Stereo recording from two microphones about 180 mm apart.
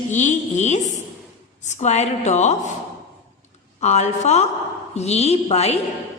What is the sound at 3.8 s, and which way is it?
A woman's voice, 40° left (ahead or behind).